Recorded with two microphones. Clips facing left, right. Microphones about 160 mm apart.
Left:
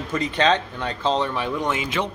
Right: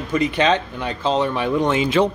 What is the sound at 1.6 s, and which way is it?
Speech, 30° right (ahead or behind).